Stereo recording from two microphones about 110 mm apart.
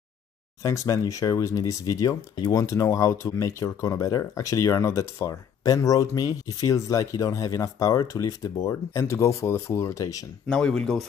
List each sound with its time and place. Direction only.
0.6 s speech: 30° left (ahead or behind)
10.5 s speech: 5° left (ahead or behind)